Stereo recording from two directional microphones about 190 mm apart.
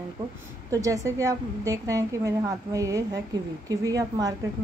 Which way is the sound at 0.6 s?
15° right (ahead or behind).